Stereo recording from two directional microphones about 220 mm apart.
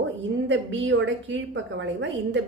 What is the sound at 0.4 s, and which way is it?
A woman's voice, 55° right (ahead or behind).